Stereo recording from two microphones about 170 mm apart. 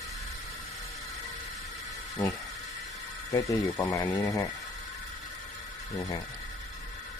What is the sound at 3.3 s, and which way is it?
Speech, 20° left (ahead or behind).